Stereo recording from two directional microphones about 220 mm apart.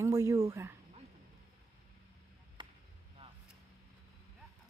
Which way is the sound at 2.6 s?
20° right (ahead or behind).